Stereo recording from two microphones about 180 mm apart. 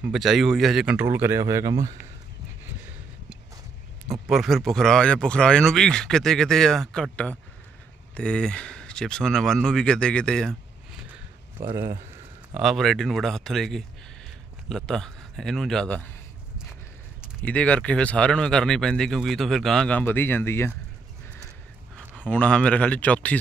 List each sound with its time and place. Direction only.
0.0 s speech: centre (ahead or behind); by 1.8 s 20° right (ahead or behind)
4.1 s speech: centre (ahead or behind)
11.7 s speech: 15° right (ahead or behind)
12.5 s speech: centre (ahead or behind)
17.4 s speech: 5° left (ahead or behind)
22.2 s speech: 5° left (ahead or behind)